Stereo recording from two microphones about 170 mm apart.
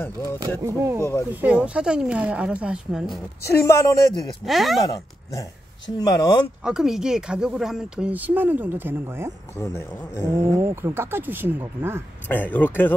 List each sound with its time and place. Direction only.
0.0 s speech: 15° left (ahead or behind)
0.6 s speech: 15° right (ahead or behind)
3.4 s speech: 15° left (ahead or behind)
4.5 s speech: centre (ahead or behind)
4.8 s speech: 20° left (ahead or behind)
6.6 s speech: 5° right (ahead or behind)
9.6 s speech: 15° left (ahead or behind)
10.4 s speech: 15° right (ahead or behind)
12.3 s speech: 10° left (ahead or behind)